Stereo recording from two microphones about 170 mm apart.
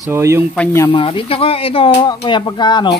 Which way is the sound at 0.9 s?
30° left (ahead or behind).